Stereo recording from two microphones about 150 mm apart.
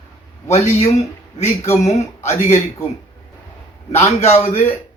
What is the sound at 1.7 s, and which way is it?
Speech, 50° left (ahead or behind).